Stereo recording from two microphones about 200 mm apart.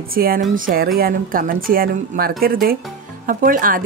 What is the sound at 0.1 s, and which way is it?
Speech, 45° right (ahead or behind).